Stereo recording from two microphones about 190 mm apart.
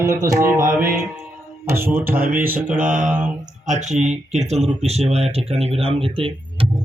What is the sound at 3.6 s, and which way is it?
A man's voice, 40° right (ahead or behind).